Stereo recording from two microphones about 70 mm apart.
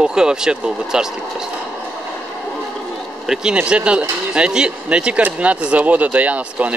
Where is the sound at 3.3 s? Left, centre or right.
Centre.